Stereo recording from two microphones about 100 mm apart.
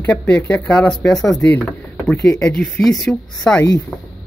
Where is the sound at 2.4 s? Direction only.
5° left (ahead or behind).